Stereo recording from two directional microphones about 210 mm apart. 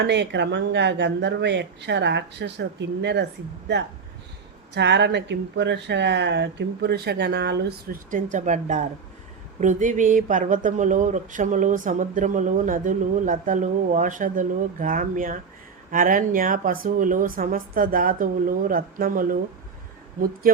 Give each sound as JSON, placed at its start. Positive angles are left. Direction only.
{"t": 0.0, "sound": "speech", "side_deg": -55}
{"t": 4.7, "sound": "speech", "side_deg": -55}
{"t": 8.1, "sound": "speech", "side_deg": -35}